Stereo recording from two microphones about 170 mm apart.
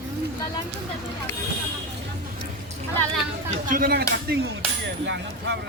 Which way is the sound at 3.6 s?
55° right (ahead or behind).